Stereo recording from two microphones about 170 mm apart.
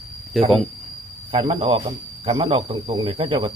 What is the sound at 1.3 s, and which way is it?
Speech, 30° right (ahead or behind).